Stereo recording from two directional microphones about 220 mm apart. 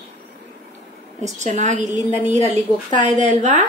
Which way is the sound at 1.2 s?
35° right (ahead or behind).